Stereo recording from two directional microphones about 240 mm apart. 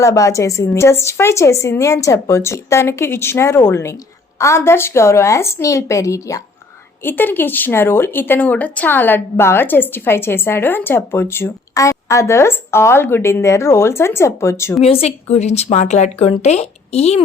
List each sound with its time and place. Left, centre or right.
0.0 s speech: centre
14.8 s a woman's voice: left